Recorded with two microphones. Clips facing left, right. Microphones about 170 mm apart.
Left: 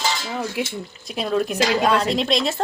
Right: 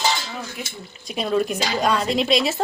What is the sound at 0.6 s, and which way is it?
Speech, 75° left (ahead or behind).